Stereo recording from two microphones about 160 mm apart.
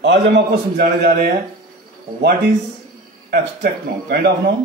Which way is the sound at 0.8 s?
75° right (ahead or behind).